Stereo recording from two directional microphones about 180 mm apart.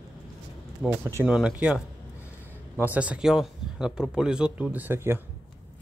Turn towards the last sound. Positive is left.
turn(degrees=-10)  # may be behind; listen again after turning